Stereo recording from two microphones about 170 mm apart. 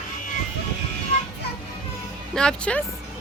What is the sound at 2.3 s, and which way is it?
Speech, 5° left (ahead or behind).